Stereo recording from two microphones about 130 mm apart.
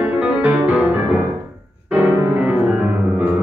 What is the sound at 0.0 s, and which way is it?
Music, 10° right (ahead or behind).